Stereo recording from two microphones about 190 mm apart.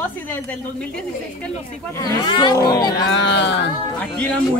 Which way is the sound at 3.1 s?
70° left (ahead or behind).